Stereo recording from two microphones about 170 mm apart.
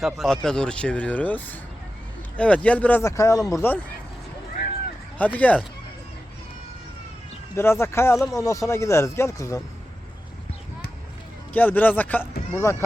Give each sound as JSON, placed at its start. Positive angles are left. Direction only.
{"t": 0.0, "sound": "speech", "side_deg": 0}
{"t": 5.1, "sound": "speech", "side_deg": 10}
{"t": 7.5, "sound": "speech", "side_deg": 15}
{"t": 11.5, "sound": "speech", "side_deg": 10}